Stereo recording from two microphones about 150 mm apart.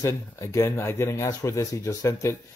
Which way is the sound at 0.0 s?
20° left (ahead or behind).